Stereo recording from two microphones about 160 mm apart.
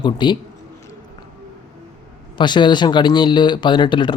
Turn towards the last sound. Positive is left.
turn(degrees=30)  # may be behind; listen again after turning